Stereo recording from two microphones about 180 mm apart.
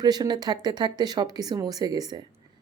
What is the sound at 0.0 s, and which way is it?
Speech, 25° right (ahead or behind).